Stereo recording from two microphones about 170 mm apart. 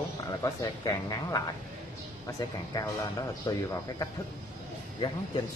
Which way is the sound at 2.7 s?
20° left (ahead or behind).